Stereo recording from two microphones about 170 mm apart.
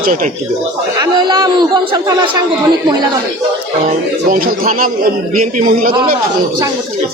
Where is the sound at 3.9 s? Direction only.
55° right (ahead or behind).